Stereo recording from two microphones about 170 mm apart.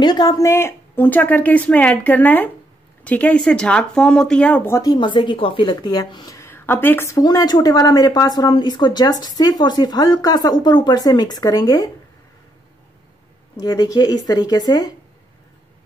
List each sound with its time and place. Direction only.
0.0 s speech: 25° left (ahead or behind)
4.9 s a woman's voice: 30° left (ahead or behind)
13.6 s a woman's voice: 20° left (ahead or behind)